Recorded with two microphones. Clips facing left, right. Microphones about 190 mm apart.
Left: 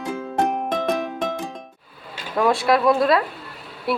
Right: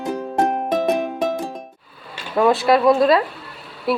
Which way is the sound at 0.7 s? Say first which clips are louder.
Right 4 dB; 10° right (ahead or behind).